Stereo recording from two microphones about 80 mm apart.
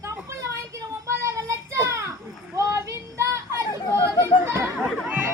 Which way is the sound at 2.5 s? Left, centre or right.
Right.